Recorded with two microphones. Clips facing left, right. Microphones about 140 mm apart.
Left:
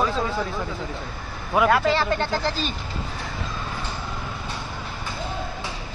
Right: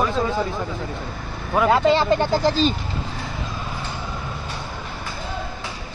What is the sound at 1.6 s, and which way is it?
Speech, 25° right (ahead or behind).